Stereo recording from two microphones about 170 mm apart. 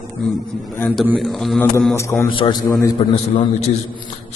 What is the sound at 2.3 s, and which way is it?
Speech, 30° left (ahead or behind).